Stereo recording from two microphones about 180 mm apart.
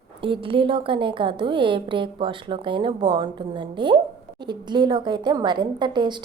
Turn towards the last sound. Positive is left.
turn(degrees=-25)  # may be behind; listen again after turning